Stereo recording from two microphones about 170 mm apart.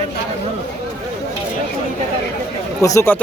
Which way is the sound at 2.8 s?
15° left (ahead or behind).